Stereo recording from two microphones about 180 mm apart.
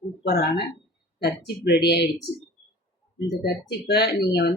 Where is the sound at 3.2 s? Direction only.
65° left (ahead or behind).